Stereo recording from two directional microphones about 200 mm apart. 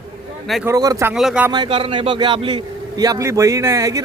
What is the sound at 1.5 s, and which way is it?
A man's voice, 25° right (ahead or behind).